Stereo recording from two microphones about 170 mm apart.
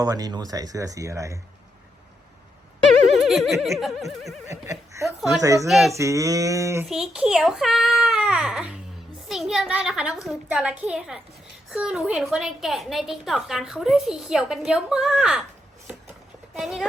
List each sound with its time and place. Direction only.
0.0 s speech: 20° right (ahead or behind)
3.2 s a woman's voice: centre (ahead or behind)
4.4 s a sound: 15° right (ahead or behind)
5.0 s speech: centre (ahead or behind)
5.4 s speech: 20° right (ahead or behind)
5.6 s a woman's voice: centre (ahead or behind)
5.9 s a sound: 20° right (ahead or behind)
6.8 s a woman's voice: 5° right (ahead or behind)
16.6 s a woman's voice: centre (ahead or behind)